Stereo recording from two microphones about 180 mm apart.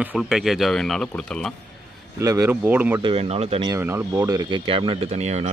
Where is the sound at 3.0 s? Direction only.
30° right (ahead or behind).